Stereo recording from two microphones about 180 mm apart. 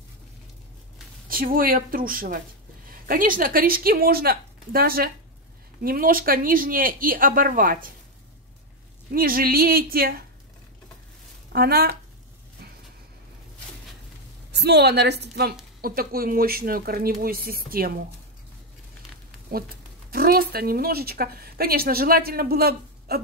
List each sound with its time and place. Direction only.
1.3 s a woman's voice: 55° right (ahead or behind)
9.1 s speech: 55° right (ahead or behind)
11.5 s speech: 60° right (ahead or behind)
14.5 s a woman's voice: 65° right (ahead or behind)
19.5 s speech: 55° right (ahead or behind)